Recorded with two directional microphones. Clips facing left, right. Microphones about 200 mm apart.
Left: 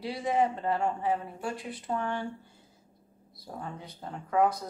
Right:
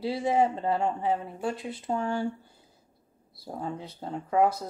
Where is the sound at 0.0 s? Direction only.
30° right (ahead or behind).